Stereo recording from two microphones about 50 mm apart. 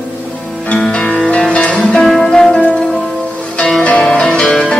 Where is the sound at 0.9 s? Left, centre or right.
Left.